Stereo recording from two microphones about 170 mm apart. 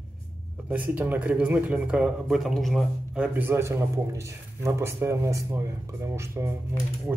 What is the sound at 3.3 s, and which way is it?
A man's voice, 15° right (ahead or behind).